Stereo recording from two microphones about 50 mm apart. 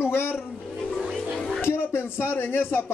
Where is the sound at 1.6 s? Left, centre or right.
Left.